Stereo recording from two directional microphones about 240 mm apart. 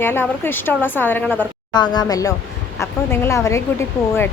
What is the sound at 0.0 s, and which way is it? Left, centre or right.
Speech, centre.